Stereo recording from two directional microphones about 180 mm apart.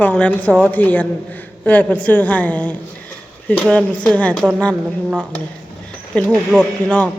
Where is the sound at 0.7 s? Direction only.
10° left (ahead or behind).